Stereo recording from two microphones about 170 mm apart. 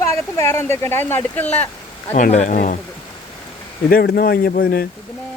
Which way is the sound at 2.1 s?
40° left (ahead or behind).